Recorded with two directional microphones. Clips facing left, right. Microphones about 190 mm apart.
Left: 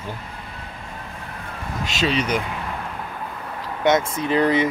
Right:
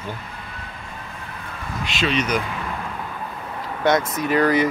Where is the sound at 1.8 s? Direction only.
40° left (ahead or behind).